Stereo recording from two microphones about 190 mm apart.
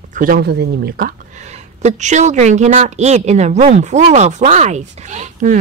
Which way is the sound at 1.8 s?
40° right (ahead or behind).